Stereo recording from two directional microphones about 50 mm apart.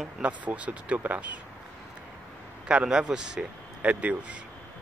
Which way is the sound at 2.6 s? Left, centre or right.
Centre.